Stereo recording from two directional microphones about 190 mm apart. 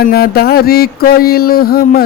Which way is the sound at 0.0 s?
55° left (ahead or behind).